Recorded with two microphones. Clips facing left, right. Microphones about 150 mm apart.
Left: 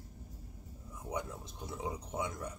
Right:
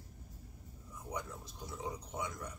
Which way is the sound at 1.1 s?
25° left (ahead or behind).